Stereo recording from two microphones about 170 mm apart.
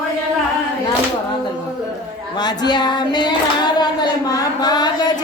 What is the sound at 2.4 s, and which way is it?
Child singing, 25° left (ahead or behind).